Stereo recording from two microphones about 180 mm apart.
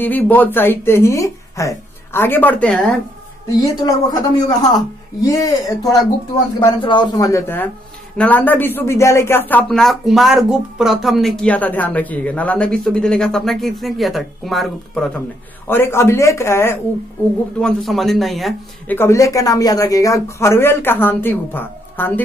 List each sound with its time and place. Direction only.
0.0 s speech: 10° left (ahead or behind)
3.6 s speech: 20° left (ahead or behind)
17.6 s speech: centre (ahead or behind)
18.9 s speech: 15° left (ahead or behind)